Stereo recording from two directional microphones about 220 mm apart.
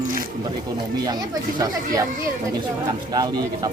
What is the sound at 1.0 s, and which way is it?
Speech, 20° right (ahead or behind).